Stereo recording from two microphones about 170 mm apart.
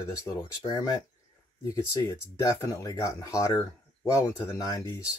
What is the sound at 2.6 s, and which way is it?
Speech, 20° left (ahead or behind).